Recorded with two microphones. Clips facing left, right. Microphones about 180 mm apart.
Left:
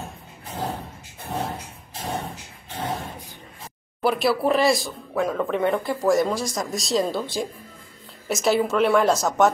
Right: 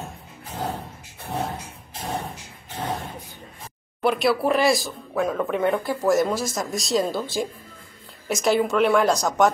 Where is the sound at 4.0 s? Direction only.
Centre (ahead or behind).